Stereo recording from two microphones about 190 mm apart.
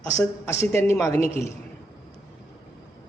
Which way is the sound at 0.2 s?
15° left (ahead or behind).